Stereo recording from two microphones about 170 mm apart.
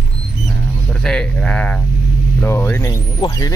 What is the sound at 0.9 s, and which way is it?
Speech, 5° left (ahead or behind).